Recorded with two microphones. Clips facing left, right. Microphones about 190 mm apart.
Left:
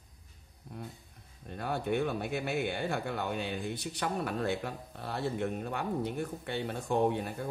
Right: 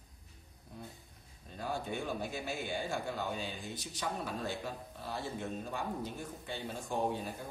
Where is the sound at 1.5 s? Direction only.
60° left (ahead or behind).